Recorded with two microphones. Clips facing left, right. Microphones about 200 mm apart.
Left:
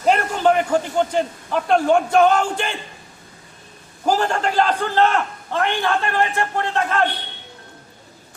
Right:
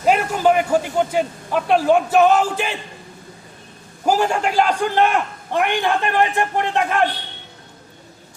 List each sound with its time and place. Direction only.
0.0 s a man's voice: 5° right (ahead or behind)
4.0 s a man's voice: 10° right (ahead or behind)